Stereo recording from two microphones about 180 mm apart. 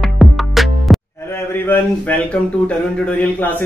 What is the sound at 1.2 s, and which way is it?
A man's voice, 15° left (ahead or behind).